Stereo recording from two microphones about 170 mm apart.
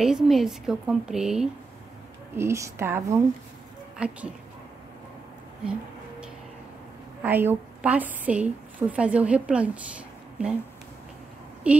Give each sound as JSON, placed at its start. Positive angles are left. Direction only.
{"t": 0.0, "sound": "speech", "side_deg": 0}
{"t": 2.3, "sound": "a woman's voice", "side_deg": -15}
{"t": 7.2, "sound": "a woman's voice", "side_deg": -10}
{"t": 11.6, "sound": "a woman's voice", "side_deg": -5}